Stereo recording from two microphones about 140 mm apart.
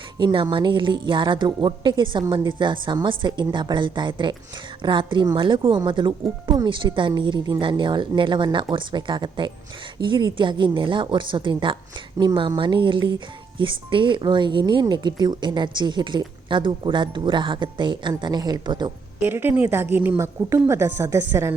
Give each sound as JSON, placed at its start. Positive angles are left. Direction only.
{"t": 0.2, "sound": "speech", "side_deg": -30}
{"t": 19.2, "sound": "a woman's voice", "side_deg": -15}